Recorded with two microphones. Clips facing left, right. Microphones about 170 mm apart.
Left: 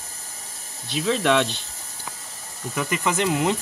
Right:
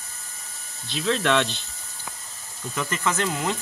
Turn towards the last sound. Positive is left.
turn(degrees=15)  # may be behind; listen again after turning